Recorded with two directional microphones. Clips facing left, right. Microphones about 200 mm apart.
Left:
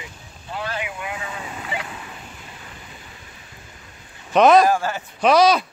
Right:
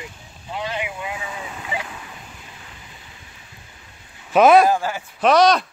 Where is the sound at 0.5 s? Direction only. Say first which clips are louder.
Right 1 dB; 20° right (ahead or behind).